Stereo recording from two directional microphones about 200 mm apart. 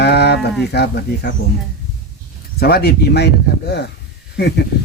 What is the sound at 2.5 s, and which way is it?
Speech, 50° left (ahead or behind).